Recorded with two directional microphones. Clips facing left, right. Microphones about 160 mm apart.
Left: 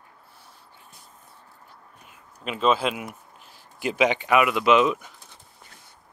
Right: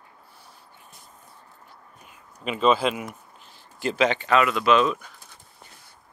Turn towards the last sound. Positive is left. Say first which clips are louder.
# left 1 dB
turn(degrees=20)  # may be behind; listen again after turning